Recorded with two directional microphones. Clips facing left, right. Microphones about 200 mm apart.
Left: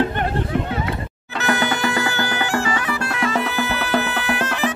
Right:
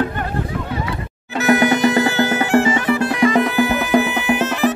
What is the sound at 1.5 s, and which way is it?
Music, 20° right (ahead or behind).